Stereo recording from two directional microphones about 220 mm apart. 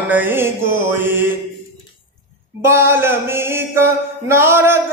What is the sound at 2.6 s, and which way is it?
Mantra, 10° right (ahead or behind).